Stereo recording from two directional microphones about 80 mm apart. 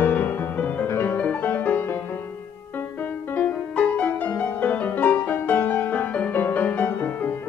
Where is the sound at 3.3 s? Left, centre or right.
Centre.